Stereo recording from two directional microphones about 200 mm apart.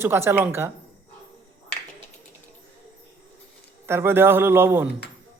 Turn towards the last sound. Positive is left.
turn(degrees=-10)  # may be behind; listen again after turning